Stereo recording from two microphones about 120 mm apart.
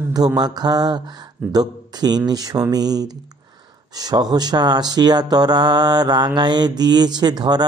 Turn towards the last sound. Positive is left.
turn(degrees=-35)  # may be behind; listen again after turning